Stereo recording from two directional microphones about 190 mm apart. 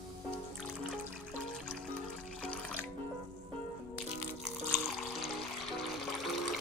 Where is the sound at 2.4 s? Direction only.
5° left (ahead or behind).